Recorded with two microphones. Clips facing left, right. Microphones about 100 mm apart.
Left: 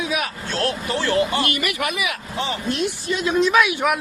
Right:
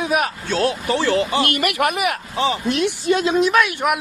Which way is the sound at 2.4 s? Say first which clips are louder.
Right 5 dB; 80° right.